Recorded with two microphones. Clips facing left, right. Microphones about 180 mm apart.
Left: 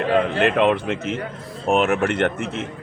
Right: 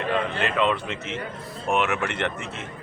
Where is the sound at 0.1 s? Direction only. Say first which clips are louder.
Left 8 dB; 60° left (ahead or behind).